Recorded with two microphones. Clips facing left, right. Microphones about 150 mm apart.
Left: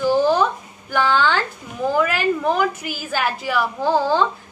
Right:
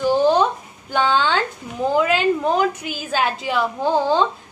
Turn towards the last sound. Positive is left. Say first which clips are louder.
# even
turn(degrees=-20)  # may be behind; listen again after turning